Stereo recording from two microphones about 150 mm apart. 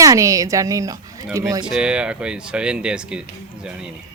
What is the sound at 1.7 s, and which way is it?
Speech, 5° right (ahead or behind).